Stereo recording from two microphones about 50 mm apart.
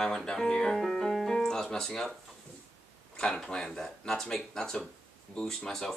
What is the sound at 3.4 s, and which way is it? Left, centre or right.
Speech, centre.